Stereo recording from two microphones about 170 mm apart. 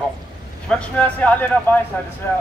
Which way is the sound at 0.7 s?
5° left (ahead or behind).